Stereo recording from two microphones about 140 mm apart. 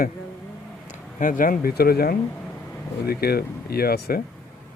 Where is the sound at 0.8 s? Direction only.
65° left (ahead or behind); by 4.2 s 90° left.